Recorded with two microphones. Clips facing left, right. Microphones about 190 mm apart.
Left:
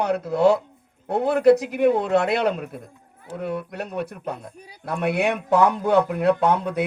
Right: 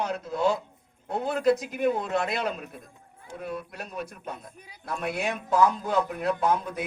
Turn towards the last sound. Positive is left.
turn(degrees=65)  # may be behind; listen again after turning